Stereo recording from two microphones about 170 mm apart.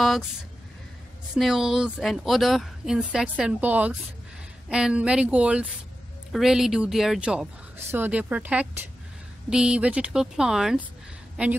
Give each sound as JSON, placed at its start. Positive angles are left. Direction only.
{"t": 1.3, "sound": "speech", "side_deg": -5}